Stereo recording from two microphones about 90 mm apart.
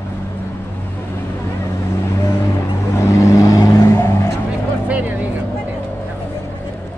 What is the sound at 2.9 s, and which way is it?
Vehicle, 35° left (ahead or behind).